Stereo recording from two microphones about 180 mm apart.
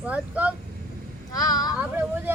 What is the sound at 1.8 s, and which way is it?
Speech, 10° right (ahead or behind).